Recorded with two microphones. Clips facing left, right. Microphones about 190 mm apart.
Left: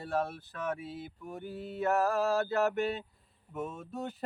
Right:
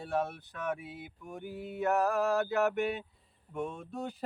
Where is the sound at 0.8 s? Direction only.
15° right (ahead or behind).